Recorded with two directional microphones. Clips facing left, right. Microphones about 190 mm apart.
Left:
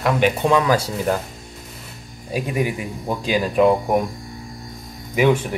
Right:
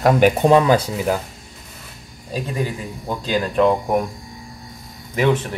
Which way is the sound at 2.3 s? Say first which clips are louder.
Left 2 dB; 15° left (ahead or behind).